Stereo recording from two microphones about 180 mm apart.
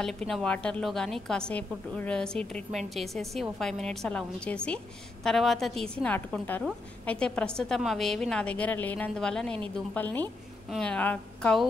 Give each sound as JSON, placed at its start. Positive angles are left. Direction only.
{"t": 0.3, "sound": "a woman's voice", "side_deg": 5}